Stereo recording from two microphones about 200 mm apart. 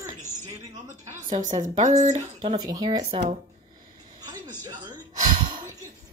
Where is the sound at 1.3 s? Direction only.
40° right (ahead or behind).